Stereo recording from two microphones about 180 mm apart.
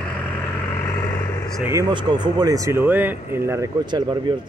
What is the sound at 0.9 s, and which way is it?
Vehicle, 20° left (ahead or behind).